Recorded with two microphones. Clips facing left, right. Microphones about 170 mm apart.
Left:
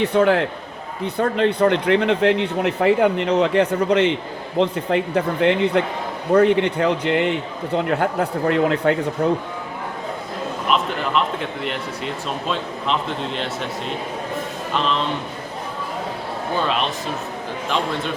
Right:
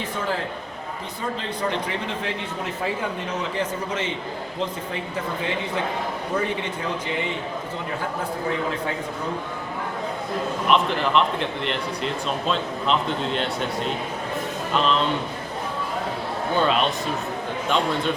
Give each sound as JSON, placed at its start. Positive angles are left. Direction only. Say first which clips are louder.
{"t": 0.0, "sound": "a man's voice", "louder": "left 11 dB", "side_deg": 70}
{"t": 10.7, "sound": "speech", "louder": "right 1 dB", "side_deg": 0}